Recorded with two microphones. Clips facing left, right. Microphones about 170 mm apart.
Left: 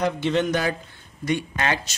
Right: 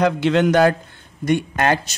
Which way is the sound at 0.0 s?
90° right.